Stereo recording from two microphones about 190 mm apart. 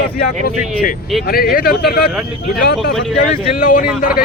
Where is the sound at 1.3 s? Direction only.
55° left (ahead or behind).